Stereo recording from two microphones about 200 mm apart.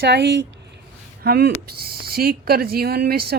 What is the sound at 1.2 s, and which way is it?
A woman's voice, 50° right (ahead or behind).